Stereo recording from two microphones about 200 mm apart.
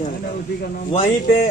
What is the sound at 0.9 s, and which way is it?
Speech, 30° left (ahead or behind).